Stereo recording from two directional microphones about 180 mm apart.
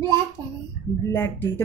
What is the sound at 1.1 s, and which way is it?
Speech, 10° left (ahead or behind).